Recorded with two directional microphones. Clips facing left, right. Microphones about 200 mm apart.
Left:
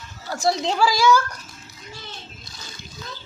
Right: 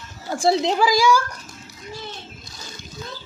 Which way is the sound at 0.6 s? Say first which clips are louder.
Right 1 dB; 15° right (ahead or behind).